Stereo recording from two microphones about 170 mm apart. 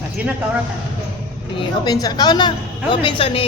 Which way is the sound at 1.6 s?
25° left (ahead or behind).